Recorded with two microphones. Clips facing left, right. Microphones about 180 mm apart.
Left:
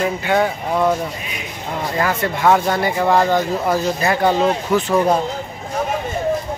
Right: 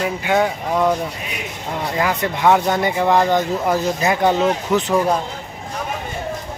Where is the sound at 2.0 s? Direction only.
15° right (ahead or behind).